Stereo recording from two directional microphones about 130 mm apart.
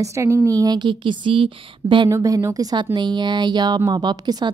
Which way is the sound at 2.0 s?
25° right (ahead or behind).